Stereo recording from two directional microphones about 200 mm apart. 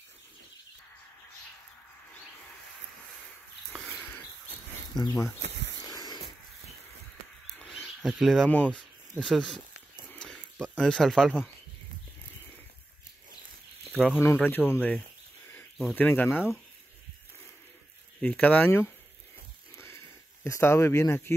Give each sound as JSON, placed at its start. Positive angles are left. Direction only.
{"t": 4.9, "sound": "speech", "side_deg": 15}
{"t": 5.4, "sound": "cricket", "side_deg": -65}
{"t": 5.9, "sound": "a sound", "side_deg": 20}
{"t": 7.5, "sound": "speech", "side_deg": 0}
{"t": 10.1, "sound": "a sound", "side_deg": 5}
{"t": 10.8, "sound": "speech", "side_deg": 5}
{"t": 13.9, "sound": "speech", "side_deg": 10}
{"t": 18.2, "sound": "speech", "side_deg": 10}
{"t": 19.7, "sound": "a sound", "side_deg": 15}